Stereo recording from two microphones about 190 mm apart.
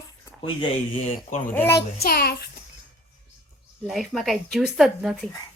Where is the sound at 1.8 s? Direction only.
55° left (ahead or behind).